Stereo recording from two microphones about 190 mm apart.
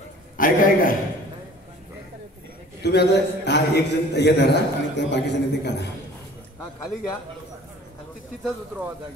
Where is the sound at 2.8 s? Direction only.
60° left (ahead or behind).